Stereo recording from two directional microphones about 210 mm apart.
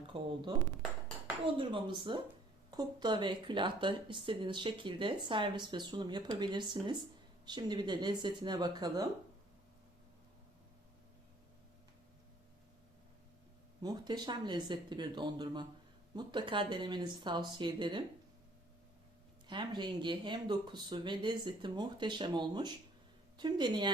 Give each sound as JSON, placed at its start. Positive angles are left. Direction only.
{"t": 1.5, "sound": "speech", "side_deg": -25}
{"t": 13.8, "sound": "speech", "side_deg": -20}
{"t": 19.5, "sound": "speech", "side_deg": -20}